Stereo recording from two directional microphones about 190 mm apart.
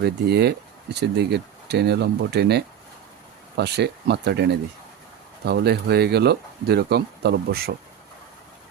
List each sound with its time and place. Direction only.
0.0 s speech: 60° right (ahead or behind)
5.5 s speech: 60° right (ahead or behind)